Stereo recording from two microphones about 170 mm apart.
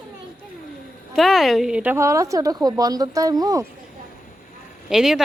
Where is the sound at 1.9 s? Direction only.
20° right (ahead or behind).